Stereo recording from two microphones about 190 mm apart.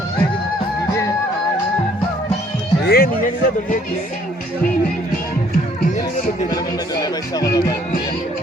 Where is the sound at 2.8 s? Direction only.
55° left (ahead or behind).